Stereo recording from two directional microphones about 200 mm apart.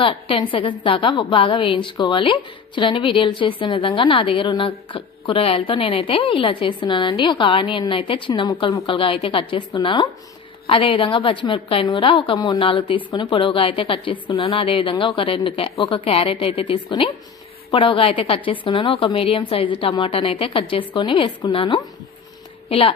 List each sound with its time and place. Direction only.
0.0 s a woman's voice: 25° left (ahead or behind)